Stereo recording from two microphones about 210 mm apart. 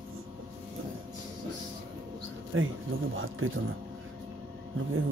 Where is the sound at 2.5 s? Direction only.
70° right (ahead or behind).